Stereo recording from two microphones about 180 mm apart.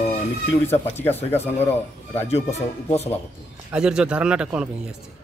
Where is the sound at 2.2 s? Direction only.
35° left (ahead or behind).